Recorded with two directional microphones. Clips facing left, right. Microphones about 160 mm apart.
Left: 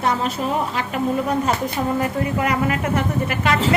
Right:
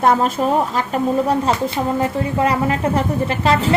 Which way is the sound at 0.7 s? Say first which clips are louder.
Right 4 dB; 35° right (ahead or behind).